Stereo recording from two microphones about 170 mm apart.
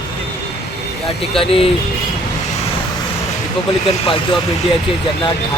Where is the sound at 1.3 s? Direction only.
35° left (ahead or behind).